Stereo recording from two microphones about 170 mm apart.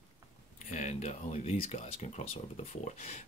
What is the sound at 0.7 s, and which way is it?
Speech, 45° left (ahead or behind).